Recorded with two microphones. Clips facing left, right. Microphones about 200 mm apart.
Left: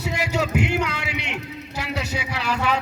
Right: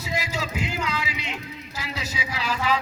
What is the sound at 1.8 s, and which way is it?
Music, 65° left (ahead or behind).